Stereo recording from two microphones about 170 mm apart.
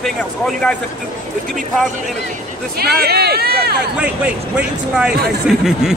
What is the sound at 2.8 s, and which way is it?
Speech, 70° right (ahead or behind).